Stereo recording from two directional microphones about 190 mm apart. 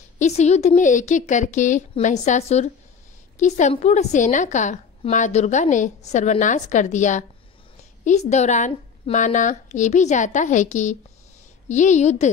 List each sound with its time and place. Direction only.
0.2 s a woman's voice: 35° left (ahead or behind)